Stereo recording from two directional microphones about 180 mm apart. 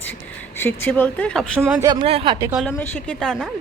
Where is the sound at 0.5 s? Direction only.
10° left (ahead or behind).